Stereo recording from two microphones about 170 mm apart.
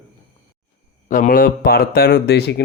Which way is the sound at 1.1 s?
55° left (ahead or behind).